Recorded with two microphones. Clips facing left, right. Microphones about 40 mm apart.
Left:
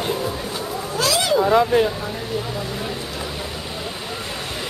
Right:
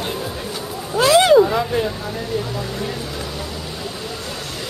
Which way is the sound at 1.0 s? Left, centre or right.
Right.